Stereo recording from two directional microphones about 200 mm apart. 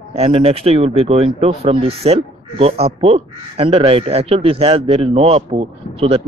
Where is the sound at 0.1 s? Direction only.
30° right (ahead or behind).